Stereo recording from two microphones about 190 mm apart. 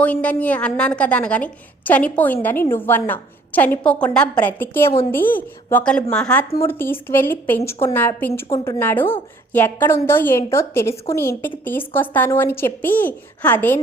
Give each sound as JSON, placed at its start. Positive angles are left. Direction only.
{"t": 0.0, "sound": "a woman's voice", "side_deg": 5}